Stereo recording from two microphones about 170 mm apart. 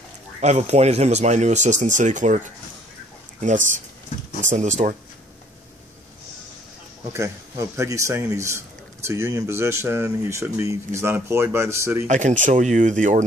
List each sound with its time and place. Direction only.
0.4 s speech: 40° right (ahead or behind)
7.1 s a man's voice: 15° right (ahead or behind)
12.1 s speech: 45° right (ahead or behind)